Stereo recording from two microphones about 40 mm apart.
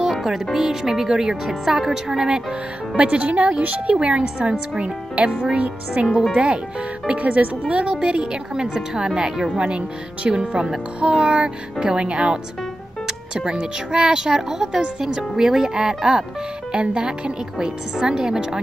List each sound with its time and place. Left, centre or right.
0.1 s speech: centre
3.0 s speech: right
6.0 s speech: right
13.5 s speech: right
14.8 s speech: right
16.7 s speech: right